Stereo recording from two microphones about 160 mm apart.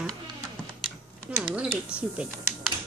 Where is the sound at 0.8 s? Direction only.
5° right (ahead or behind).